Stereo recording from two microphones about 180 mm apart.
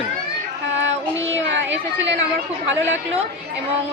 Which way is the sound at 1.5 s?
90° right.